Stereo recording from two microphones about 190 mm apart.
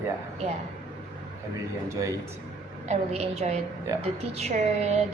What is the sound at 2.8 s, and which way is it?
A woman's voice, 35° right (ahead or behind).